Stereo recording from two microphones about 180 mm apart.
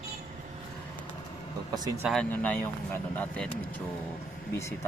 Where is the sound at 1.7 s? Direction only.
20° right (ahead or behind).